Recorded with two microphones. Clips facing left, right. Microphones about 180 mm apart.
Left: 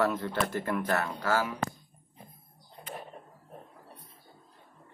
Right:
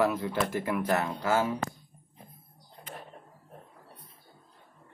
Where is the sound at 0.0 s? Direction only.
10° right (ahead or behind).